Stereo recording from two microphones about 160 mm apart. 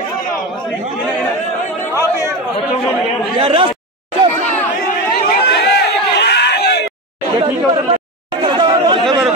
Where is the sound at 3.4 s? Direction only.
35° right (ahead or behind).